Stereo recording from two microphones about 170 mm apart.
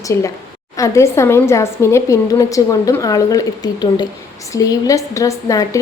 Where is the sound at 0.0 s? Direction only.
20° left (ahead or behind).